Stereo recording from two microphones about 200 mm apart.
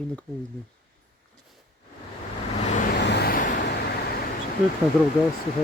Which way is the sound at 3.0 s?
55° left (ahead or behind).